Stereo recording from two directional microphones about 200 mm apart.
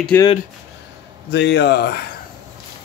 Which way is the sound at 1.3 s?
60° left (ahead or behind).